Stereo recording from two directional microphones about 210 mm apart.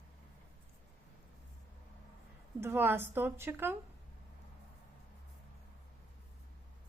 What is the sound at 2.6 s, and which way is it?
A woman's voice, 10° right (ahead or behind).